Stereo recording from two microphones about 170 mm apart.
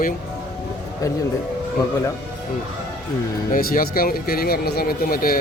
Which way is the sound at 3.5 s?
55° left (ahead or behind).